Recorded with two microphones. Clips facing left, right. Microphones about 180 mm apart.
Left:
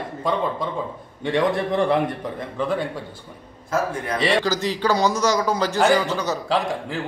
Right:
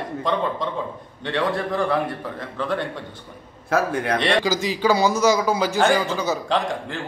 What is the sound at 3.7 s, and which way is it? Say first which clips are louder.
Speech: right 3 dB; 70° right (ahead or behind).